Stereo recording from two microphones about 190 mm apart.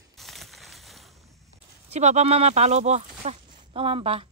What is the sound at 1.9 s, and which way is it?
A woman's voice, 35° right (ahead or behind).